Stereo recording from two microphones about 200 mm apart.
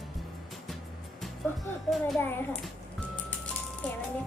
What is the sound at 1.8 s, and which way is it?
Speech, centre (ahead or behind).